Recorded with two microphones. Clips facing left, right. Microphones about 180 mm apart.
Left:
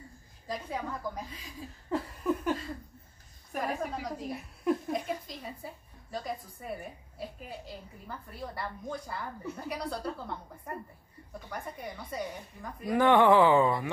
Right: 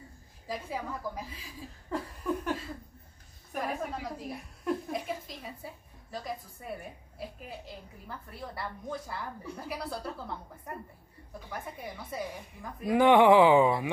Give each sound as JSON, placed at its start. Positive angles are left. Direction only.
{"t": 0.5, "sound": "a woman's voice", "side_deg": -5}
{"t": 2.2, "sound": "a sound", "side_deg": 5}
{"t": 3.5, "sound": "a woman's voice", "side_deg": 0}
{"t": 12.9, "sound": "speech", "side_deg": -15}